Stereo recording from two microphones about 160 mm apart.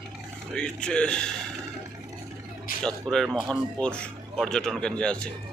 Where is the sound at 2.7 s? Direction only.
60° left (ahead or behind).